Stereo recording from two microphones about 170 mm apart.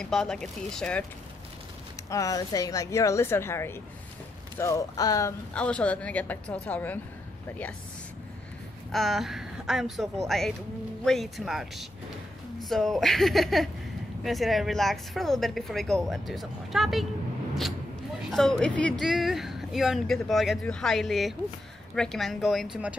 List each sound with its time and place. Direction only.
0.0 s speech: 5° left (ahead or behind)
2.0 s a woman's voice: 20° left (ahead or behind)
5.5 s a woman's voice: 5° left (ahead or behind)
8.9 s a woman's voice: centre (ahead or behind)
18.3 s speech: 5° left (ahead or behind)